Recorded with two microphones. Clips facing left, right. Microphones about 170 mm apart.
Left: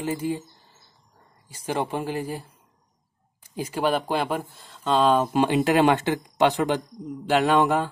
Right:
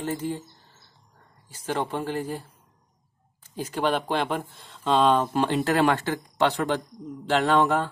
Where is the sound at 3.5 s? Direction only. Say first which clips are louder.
Left 1 dB; 10° left (ahead or behind).